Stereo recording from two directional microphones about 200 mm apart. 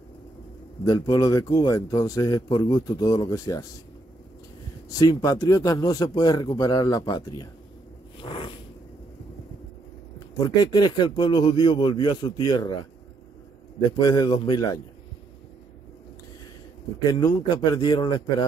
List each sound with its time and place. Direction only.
0.8 s a man's voice: 20° left (ahead or behind)
4.8 s a man's voice: 20° left (ahead or behind)
8.2 s zipper: 25° left (ahead or behind)
10.1 s a man's voice: 20° left (ahead or behind)
17.0 s a man's voice: 20° left (ahead or behind)